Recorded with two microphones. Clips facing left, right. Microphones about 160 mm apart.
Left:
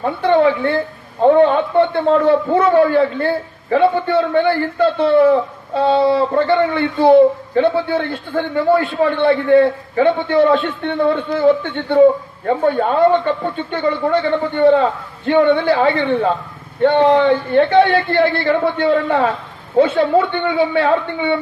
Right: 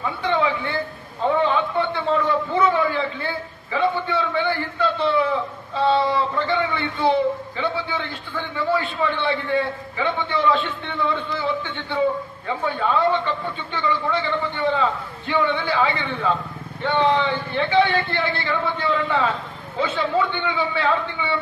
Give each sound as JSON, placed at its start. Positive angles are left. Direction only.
{"t": 0.0, "sound": "a woman's voice", "side_deg": 60}